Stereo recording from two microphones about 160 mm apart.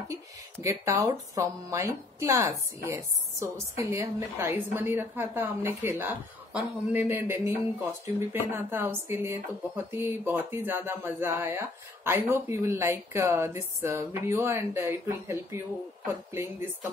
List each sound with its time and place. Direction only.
0.1 s speech: 20° right (ahead or behind)